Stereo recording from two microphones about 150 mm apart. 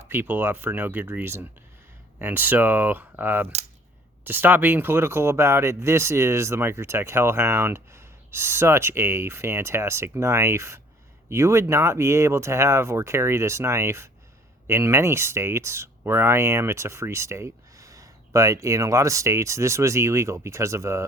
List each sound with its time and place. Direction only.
0.1 s speech: 15° right (ahead or behind)